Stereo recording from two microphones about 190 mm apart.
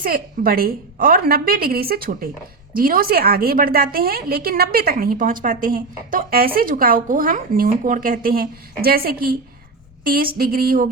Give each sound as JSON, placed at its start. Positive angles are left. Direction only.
{"t": 0.0, "sound": "a woman's voice", "side_deg": -50}